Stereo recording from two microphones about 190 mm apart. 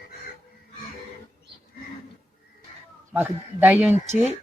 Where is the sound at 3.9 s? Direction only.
35° right (ahead or behind).